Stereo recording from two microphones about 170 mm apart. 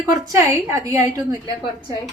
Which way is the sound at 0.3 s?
20° right (ahead or behind).